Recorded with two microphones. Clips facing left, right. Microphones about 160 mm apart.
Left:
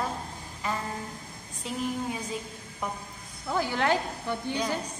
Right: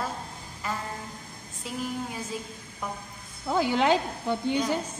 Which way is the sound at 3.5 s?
20° right (ahead or behind).